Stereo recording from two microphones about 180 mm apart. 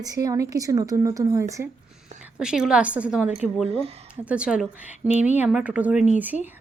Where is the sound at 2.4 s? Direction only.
5° right (ahead or behind).